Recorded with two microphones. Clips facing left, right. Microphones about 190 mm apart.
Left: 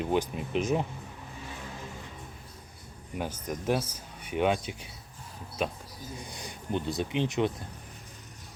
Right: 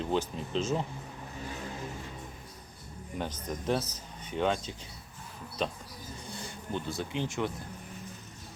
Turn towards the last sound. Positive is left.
turn(degrees=20)  # may be behind; listen again after turning